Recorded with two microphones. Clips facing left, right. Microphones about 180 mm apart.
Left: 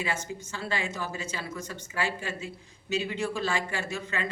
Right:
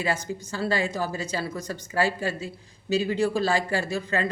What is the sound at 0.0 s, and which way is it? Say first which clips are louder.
Speech: right 5 dB; 35° right (ahead or behind).